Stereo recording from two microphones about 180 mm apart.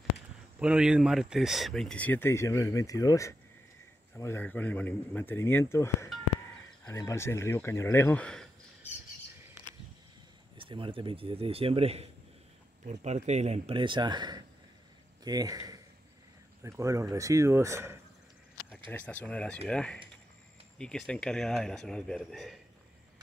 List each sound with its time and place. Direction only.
0.6 s speech: 5° right (ahead or behind)
10.6 s speech: 30° right (ahead or behind)
18.9 s speech: 10° left (ahead or behind)